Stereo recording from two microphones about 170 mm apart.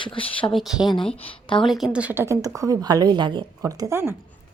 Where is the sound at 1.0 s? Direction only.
30° left (ahead or behind).